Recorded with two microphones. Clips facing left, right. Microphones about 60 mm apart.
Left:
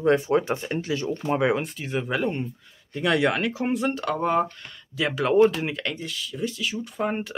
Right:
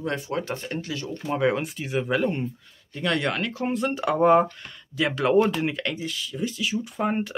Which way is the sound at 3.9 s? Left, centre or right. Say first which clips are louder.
Right 5 dB; centre.